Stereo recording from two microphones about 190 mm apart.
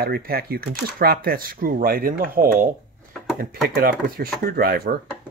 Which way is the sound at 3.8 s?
50° right (ahead or behind).